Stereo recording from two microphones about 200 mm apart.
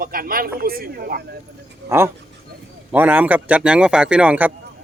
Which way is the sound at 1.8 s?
10° right (ahead or behind).